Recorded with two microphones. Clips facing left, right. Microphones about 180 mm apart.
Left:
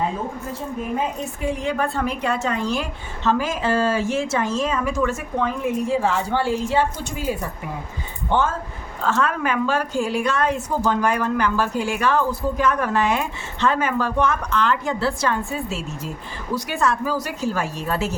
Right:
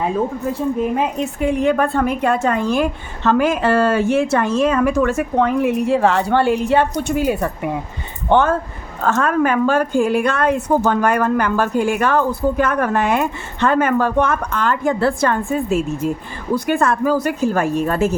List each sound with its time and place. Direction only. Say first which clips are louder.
0.9 s a woman's voice: right 6 dB; 65° right (ahead or behind)
9.0 s a woman's voice: right 5 dB; 50° right (ahead or behind)